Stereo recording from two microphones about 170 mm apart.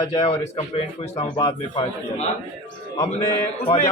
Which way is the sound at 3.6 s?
40° left (ahead or behind).